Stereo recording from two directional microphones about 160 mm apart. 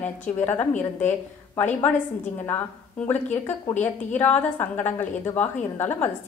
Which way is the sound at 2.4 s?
10° left (ahead or behind).